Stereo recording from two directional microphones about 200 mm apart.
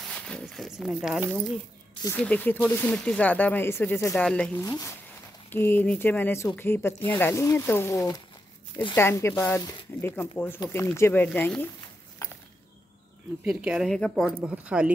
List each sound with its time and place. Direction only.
0.1 s speech: 5° left (ahead or behind)
4.6 s speech: 20° left (ahead or behind)
13.4 s speech: 5° right (ahead or behind)
14.3 s speech: 5° right (ahead or behind)